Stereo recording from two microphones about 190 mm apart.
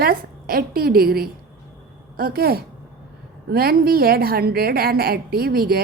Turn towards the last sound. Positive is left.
turn(degrees=-50)  # may be behind; listen again after turning